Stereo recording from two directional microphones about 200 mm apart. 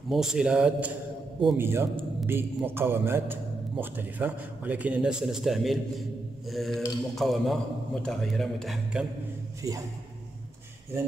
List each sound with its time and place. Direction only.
0.1 s a man's voice: centre (ahead or behind)
9.6 s a man's voice: 15° right (ahead or behind)